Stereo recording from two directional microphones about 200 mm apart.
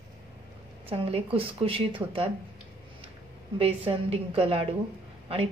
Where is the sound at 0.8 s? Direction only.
30° right (ahead or behind).